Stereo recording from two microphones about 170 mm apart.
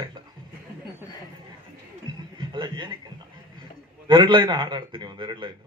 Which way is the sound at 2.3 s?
25° right (ahead or behind).